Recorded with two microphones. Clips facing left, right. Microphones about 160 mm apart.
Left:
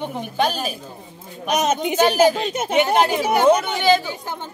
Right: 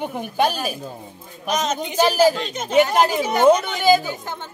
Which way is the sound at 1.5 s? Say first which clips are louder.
Left 3 dB; 10° left (ahead or behind).